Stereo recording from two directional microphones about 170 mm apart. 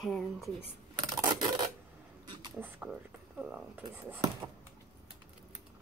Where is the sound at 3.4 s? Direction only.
5° right (ahead or behind).